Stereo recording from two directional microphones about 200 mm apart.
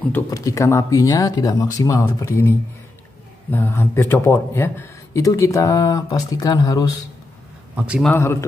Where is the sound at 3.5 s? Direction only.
10° left (ahead or behind).